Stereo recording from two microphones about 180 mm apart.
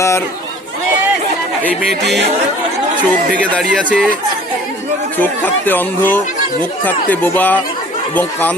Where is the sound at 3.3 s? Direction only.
5° left (ahead or behind).